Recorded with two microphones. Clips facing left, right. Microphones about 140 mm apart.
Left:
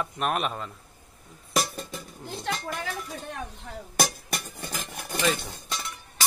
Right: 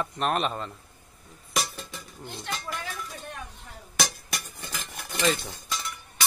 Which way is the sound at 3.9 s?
50° left (ahead or behind).